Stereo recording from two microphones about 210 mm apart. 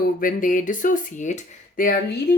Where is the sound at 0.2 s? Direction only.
40° left (ahead or behind).